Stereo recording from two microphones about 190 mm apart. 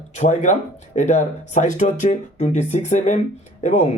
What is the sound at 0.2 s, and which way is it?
Speech, 40° left (ahead or behind).